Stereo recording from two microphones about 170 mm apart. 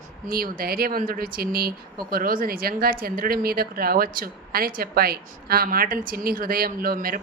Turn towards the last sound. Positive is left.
turn(degrees=-60)  # may be behind; listen again after turning